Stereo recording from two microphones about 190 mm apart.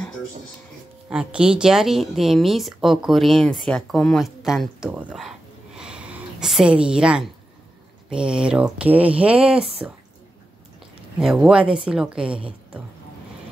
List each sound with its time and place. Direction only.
1.1 s speech: 5° right (ahead or behind)
5.8 s a sound: 5° right (ahead or behind)
8.1 s speech: 5° right (ahead or behind)
11.1 s speech: 5° right (ahead or behind)